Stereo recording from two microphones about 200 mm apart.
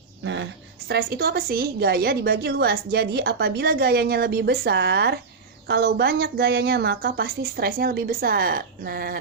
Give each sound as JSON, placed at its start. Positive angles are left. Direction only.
{"t": 0.9, "sound": "a woman's voice", "side_deg": -50}